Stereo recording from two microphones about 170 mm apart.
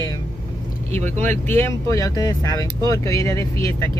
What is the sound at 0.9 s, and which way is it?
Speech, 40° right (ahead or behind).